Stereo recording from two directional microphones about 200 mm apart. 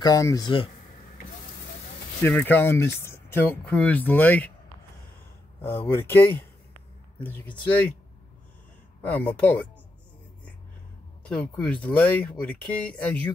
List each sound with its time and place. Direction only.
0.0 s speech: 15° left (ahead or behind)
2.2 s speech: 10° left (ahead or behind)
5.9 s speech: 10° left (ahead or behind)
9.0 s speech: 5° left (ahead or behind)
11.2 s speech: 5° left (ahead or behind)